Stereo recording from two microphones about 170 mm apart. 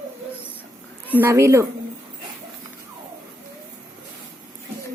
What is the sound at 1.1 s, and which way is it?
Speech, 10° right (ahead or behind).